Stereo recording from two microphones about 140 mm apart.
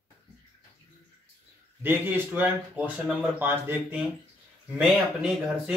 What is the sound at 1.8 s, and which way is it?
A man's voice, 15° right (ahead or behind).